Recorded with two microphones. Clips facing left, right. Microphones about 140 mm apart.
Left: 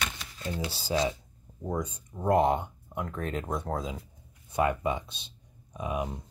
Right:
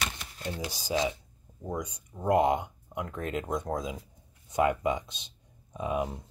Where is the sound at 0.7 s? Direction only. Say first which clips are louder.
Left 1 dB; 15° right (ahead or behind).